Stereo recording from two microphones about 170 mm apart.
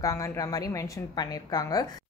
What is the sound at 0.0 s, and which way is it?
A woman's voice, 20° left (ahead or behind).